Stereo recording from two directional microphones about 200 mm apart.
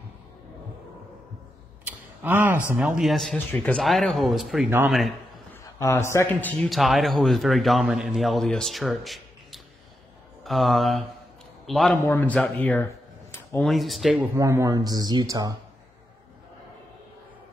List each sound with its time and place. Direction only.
1.9 s a sound: 10° right (ahead or behind)
2.7 s a man's voice: centre (ahead or behind)
4.6 s speech: 10° right (ahead or behind)
4.9 s a sound: centre (ahead or behind)
5.6 s a man's voice: 15° left (ahead or behind)
13.6 s a man's voice: centre (ahead or behind)
14.3 s speech: 15° right (ahead or behind)